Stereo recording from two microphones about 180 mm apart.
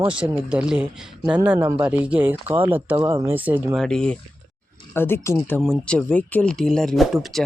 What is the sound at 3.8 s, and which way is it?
Speech, 5° left (ahead or behind).